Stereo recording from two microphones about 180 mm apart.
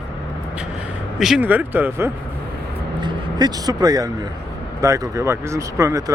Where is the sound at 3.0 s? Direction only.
25° right (ahead or behind).